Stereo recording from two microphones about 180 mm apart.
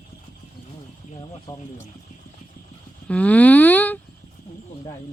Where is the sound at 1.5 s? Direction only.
20° left (ahead or behind).